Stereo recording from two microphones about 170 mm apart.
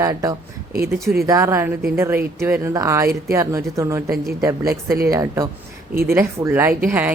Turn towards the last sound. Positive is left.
turn(degrees=-10)  # may be behind; listen again after turning